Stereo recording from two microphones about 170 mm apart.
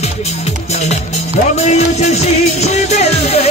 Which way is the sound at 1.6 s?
40° left (ahead or behind).